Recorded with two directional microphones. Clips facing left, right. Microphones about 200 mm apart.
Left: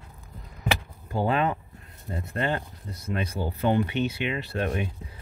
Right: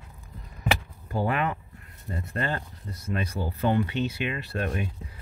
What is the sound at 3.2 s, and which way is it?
Speech, 20° left (ahead or behind).